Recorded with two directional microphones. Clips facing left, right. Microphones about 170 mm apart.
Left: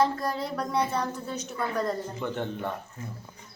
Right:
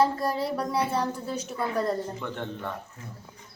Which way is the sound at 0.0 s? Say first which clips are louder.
Right 2 dB; 5° right (ahead or behind).